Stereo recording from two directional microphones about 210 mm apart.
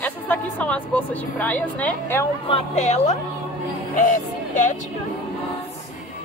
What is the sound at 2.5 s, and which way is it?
Speech, 30° left (ahead or behind).